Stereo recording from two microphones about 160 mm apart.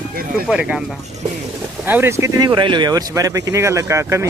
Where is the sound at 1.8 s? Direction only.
15° right (ahead or behind).